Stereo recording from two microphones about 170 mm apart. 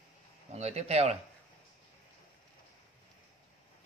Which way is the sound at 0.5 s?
40° right (ahead or behind).